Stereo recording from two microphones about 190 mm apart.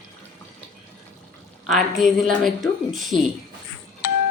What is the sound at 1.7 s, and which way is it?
Speech, centre (ahead or behind).